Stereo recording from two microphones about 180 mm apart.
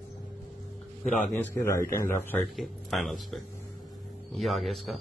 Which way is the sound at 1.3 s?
15° left (ahead or behind).